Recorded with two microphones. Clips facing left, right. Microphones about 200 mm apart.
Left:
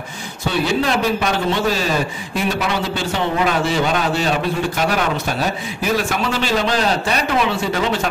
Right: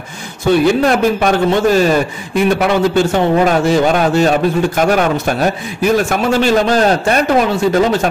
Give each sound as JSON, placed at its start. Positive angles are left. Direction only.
{"t": 0.8, "sound": "a man's voice", "side_deg": -50}